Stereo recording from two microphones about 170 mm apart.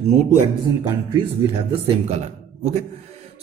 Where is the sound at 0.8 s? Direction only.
25° right (ahead or behind).